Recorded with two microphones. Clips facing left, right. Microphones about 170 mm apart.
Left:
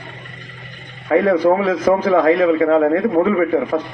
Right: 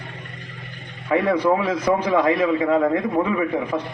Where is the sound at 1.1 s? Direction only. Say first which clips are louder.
Left 5 dB; 45° left (ahead or behind).